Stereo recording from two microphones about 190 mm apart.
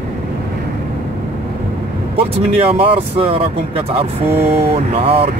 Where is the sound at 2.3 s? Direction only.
30° right (ahead or behind).